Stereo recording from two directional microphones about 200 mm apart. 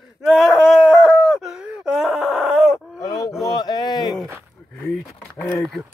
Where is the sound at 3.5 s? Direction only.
20° left (ahead or behind).